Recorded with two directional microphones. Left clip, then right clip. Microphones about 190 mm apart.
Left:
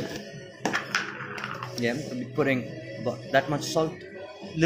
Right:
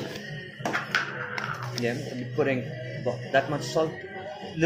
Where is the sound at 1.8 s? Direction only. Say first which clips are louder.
Left 2 dB; 45° left (ahead or behind).